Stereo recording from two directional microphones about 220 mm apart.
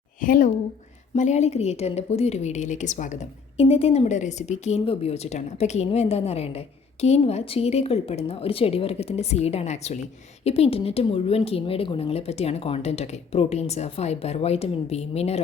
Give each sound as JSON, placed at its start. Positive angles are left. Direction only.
{"t": 0.2, "sound": "a woman's voice", "side_deg": 40}